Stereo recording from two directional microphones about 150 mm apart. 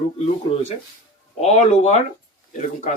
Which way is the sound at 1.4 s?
50° left (ahead or behind).